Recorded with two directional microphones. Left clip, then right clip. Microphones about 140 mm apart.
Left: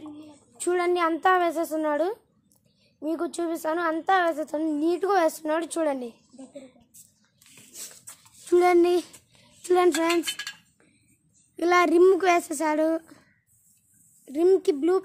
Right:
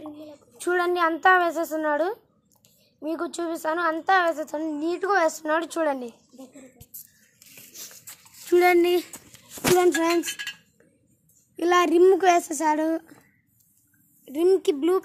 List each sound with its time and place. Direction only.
0.2 s a woman's voice: 10° left (ahead or behind); by 5.3 s 25° left (ahead or behind)
5.3 s a woman's voice: 15° left (ahead or behind)
8.5 s speech: 20° left (ahead or behind)
9.6 s speech: 5° left (ahead or behind)
11.5 s a child's voice: centre (ahead or behind)
14.2 s speech: centre (ahead or behind)